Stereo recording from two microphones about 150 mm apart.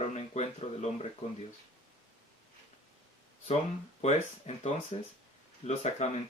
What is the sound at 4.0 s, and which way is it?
Speech, 45° left (ahead or behind).